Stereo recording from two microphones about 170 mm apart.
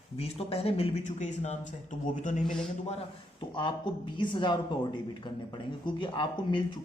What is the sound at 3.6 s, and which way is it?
Speech, 30° left (ahead or behind).